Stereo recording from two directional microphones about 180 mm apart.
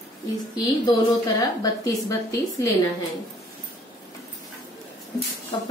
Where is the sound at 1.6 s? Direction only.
20° left (ahead or behind).